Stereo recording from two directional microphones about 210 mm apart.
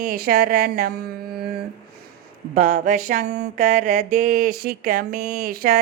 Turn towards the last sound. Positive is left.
turn(degrees=-45)  # may be behind; listen again after turning